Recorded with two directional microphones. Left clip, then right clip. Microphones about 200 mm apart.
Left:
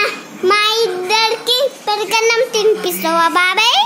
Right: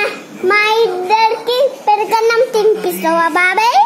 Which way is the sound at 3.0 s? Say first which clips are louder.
Right 1 dB; 15° left (ahead or behind).